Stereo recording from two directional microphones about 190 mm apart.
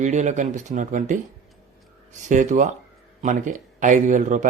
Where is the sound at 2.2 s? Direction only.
40° right (ahead or behind).